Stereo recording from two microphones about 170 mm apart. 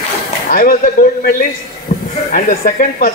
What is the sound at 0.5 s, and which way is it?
Speech, 60° left (ahead or behind).